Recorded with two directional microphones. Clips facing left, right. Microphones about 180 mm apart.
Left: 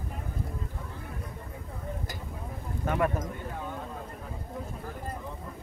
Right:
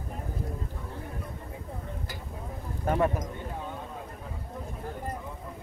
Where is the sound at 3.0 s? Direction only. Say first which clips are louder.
Right 1 dB; 20° right (ahead or behind).